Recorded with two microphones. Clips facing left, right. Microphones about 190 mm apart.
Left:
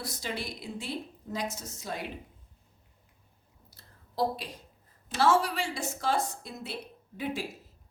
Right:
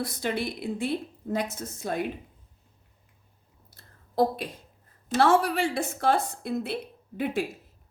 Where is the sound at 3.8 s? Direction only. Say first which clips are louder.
Right 6 dB; 55° right (ahead or behind).